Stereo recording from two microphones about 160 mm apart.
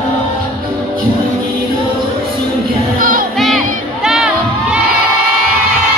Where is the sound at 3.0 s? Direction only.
60° right (ahead or behind).